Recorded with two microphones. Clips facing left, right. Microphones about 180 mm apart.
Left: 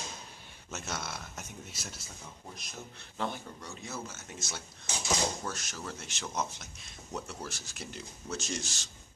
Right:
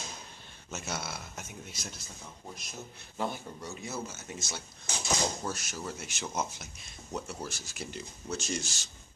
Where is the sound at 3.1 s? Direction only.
10° right (ahead or behind).